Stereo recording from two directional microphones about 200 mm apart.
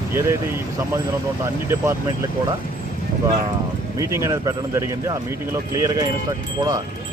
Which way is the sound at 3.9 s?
15° right (ahead or behind).